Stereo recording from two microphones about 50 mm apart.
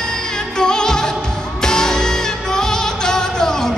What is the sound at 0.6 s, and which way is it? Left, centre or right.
Music, centre.